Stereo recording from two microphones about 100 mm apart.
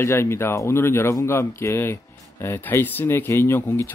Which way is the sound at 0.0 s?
25° left (ahead or behind).